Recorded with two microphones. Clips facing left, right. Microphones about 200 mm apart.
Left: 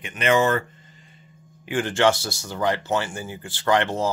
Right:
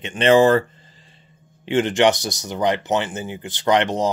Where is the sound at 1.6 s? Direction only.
25° right (ahead or behind).